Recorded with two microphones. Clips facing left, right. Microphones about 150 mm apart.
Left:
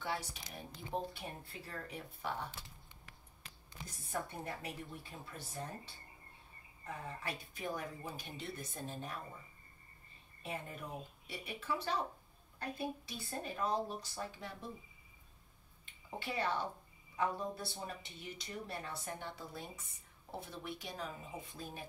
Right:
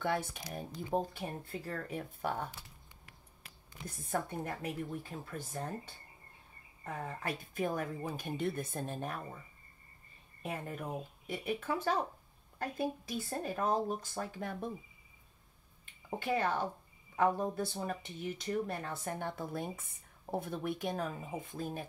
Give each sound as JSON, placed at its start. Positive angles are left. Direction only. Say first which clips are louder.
{"t": 0.0, "sound": "speech", "louder": "right 7 dB", "side_deg": -55}
{"t": 3.8, "sound": "speech", "louder": "right 5 dB", "side_deg": -50}
{"t": 10.4, "sound": "speech", "louder": "right 4 dB", "side_deg": -50}
{"t": 13.3, "sound": "speech", "louder": "right 4 dB", "side_deg": -45}
{"t": 16.2, "sound": "speech", "louder": "right 5 dB", "side_deg": -45}